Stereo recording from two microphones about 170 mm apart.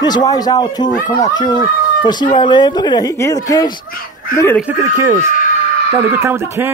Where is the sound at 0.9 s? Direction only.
50° left (ahead or behind).